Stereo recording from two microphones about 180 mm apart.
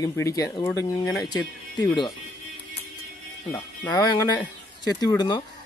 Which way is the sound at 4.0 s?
20° left (ahead or behind).